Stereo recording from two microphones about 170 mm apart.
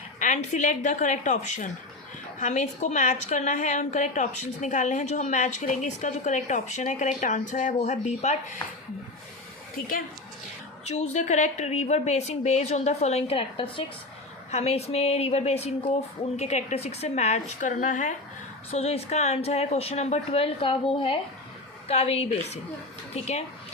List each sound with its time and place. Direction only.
0.2 s a woman's voice: 45° left (ahead or behind)
10.8 s speech: 40° left (ahead or behind)
18.7 s speech: 35° left (ahead or behind)